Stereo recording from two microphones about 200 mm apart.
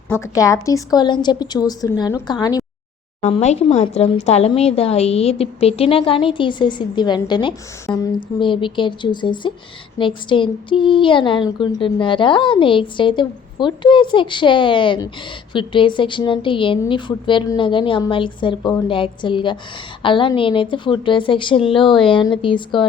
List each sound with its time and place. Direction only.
0.1 s speech: 15° left (ahead or behind)
3.2 s speech: 35° left (ahead or behind)